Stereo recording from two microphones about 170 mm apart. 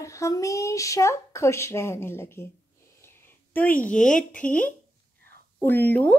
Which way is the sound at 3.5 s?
10° left (ahead or behind).